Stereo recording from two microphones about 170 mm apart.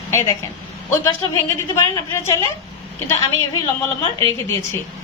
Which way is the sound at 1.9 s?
20° left (ahead or behind).